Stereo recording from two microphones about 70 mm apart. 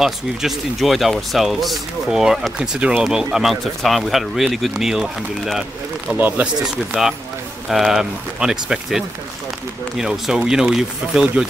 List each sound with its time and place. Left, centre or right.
0.0 s speech: centre
6.1 s speech: right
6.4 s speech: centre